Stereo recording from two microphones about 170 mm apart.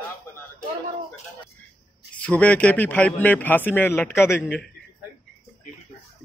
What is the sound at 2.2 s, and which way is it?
A man's voice, 10° left (ahead or behind).